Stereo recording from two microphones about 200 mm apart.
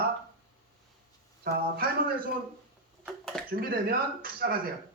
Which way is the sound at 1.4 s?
50° right (ahead or behind).